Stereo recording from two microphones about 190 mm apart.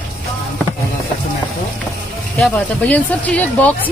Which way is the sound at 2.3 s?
5° left (ahead or behind).